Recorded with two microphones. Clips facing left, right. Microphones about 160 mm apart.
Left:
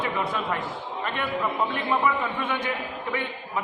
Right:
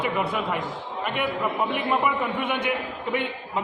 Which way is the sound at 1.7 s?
15° right (ahead or behind).